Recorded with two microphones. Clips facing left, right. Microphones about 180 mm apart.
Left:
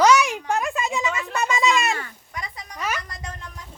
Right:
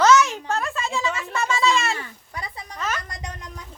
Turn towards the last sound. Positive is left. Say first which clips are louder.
# right 1 dB
turn(degrees=-20)  # may be behind; listen again after turning